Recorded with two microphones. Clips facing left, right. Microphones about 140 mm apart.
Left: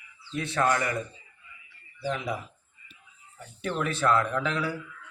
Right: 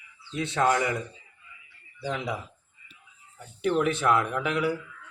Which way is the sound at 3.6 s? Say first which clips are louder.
Right 4 dB; 15° right (ahead or behind).